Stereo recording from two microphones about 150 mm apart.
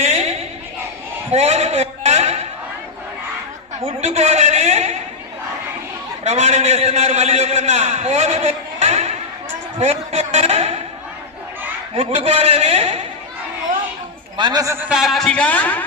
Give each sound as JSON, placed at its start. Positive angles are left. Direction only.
{"t": 0.0, "sound": "a sound", "side_deg": -45}
{"t": 3.8, "sound": "a man's voice", "side_deg": -45}
{"t": 6.2, "sound": "a man's voice", "side_deg": -45}
{"t": 11.9, "sound": "a man's voice", "side_deg": -40}
{"t": 14.3, "sound": "a man's voice", "side_deg": -30}
{"t": 14.8, "sound": "speech", "side_deg": -5}